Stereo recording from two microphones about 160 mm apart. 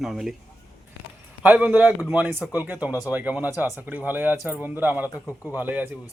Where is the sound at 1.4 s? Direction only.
10° right (ahead or behind).